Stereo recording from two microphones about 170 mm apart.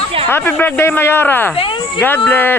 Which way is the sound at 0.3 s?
10° left (ahead or behind).